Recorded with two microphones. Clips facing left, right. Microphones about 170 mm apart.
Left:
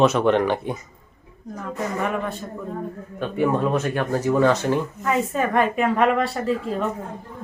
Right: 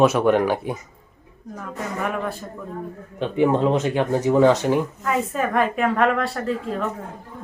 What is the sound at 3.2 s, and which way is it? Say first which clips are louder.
Speech: right 3 dB; 20° right (ahead or behind).